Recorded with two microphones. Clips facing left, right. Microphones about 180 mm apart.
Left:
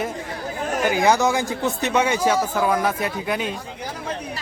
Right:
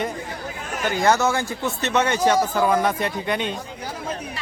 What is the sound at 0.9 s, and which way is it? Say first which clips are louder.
A man's voice: even; 10° left (ahead or behind).